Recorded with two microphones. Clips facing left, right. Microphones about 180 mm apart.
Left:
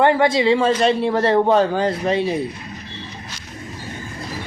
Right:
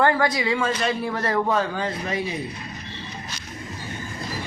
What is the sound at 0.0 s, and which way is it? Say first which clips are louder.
A man's voice: left 5 dB; 25° left (ahead or behind).